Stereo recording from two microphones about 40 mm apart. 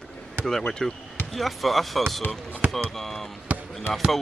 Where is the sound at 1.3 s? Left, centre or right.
Centre.